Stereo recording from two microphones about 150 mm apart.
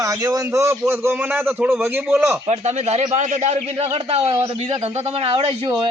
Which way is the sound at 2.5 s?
45° right (ahead or behind).